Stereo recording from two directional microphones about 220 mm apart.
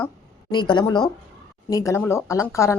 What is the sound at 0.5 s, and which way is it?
A woman's voice, 20° left (ahead or behind).